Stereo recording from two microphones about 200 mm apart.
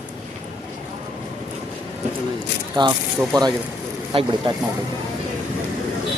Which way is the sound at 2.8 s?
20° right (ahead or behind).